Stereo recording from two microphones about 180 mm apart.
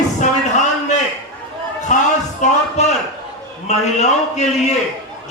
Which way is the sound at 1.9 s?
45° left (ahead or behind).